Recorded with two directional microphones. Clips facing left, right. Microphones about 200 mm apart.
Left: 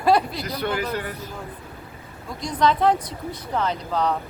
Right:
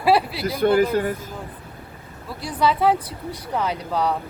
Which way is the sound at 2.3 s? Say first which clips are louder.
Even; 5° right (ahead or behind).